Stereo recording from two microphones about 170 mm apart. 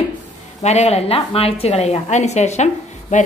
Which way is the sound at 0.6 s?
40° left (ahead or behind).